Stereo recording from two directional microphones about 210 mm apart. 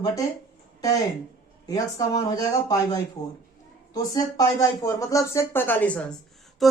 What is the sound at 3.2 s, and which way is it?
Speech, 30° left (ahead or behind).